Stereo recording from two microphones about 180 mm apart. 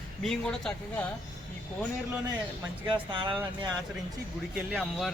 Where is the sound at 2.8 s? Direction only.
25° right (ahead or behind).